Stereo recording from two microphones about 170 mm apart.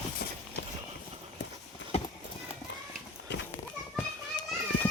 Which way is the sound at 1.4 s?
90° left.